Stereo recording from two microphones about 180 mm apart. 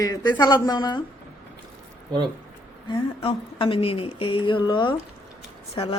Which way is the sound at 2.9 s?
25° left (ahead or behind).